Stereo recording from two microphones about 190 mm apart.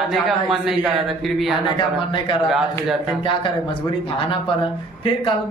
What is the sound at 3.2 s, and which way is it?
Speech, 25° left (ahead or behind).